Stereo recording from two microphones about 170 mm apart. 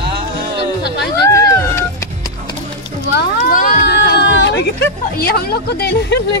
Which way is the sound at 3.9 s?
90° left.